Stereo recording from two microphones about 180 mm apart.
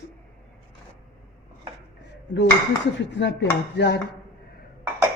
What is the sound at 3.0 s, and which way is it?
Dishes, 85° left.